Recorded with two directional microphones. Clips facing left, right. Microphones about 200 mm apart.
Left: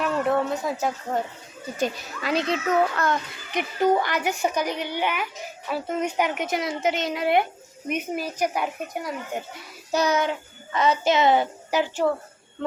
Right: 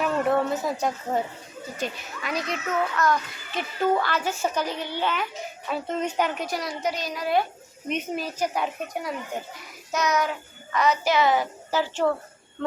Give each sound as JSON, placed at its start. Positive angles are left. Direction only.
{"t": 0.0, "sound": "a woman's voice", "side_deg": 0}
{"t": 2.2, "sound": "a child's voice", "side_deg": 30}
{"t": 3.5, "sound": "a woman's voice", "side_deg": 15}
{"t": 7.9, "sound": "a woman's voice", "side_deg": 10}
{"t": 9.9, "sound": "a child's voice", "side_deg": 30}